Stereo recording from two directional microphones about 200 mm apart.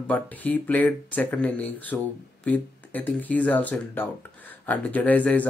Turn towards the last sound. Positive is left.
turn(degrees=5)  # may be behind; listen again after turning